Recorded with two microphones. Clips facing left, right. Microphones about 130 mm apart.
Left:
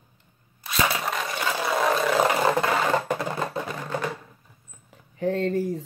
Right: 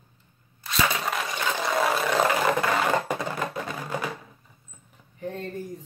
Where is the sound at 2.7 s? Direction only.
5° left (ahead or behind).